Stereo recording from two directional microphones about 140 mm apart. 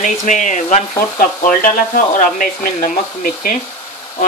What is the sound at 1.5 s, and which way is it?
Speech, 70° left (ahead or behind).